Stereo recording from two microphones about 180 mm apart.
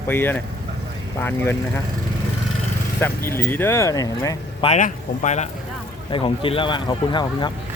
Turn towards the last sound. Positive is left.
turn(degrees=25)  # may be behind; listen again after turning